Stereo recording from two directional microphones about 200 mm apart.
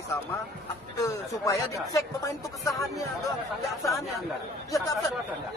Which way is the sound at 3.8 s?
Centre (ahead or behind).